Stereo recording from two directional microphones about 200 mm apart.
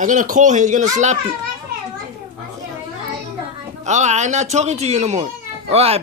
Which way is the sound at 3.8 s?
35° right (ahead or behind).